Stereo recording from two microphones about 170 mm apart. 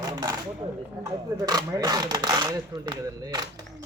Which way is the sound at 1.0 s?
25° right (ahead or behind).